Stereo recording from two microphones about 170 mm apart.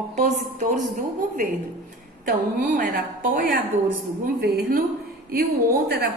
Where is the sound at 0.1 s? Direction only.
45° right (ahead or behind).